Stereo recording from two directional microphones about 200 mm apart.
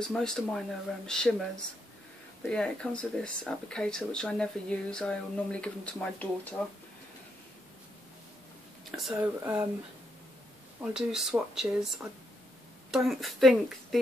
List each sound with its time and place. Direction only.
0.0 s speech: 5° left (ahead or behind)
2.5 s speech: 5° left (ahead or behind)
8.9 s speech: 5° right (ahead or behind)
10.8 s speech: 5° right (ahead or behind)